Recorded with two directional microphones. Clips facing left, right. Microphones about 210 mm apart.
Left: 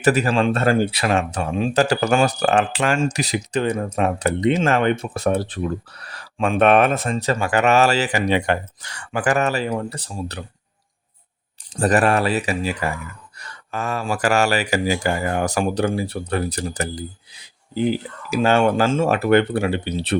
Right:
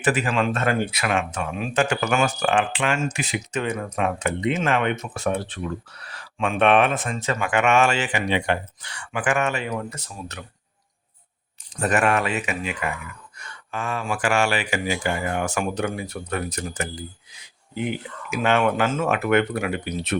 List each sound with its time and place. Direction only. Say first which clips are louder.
0.0 s speech: left 5 dB; 40° left (ahead or behind)
11.7 s speech: left 4 dB; 35° left (ahead or behind)